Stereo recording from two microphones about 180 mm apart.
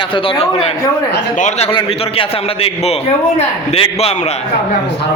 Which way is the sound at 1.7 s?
30° left (ahead or behind).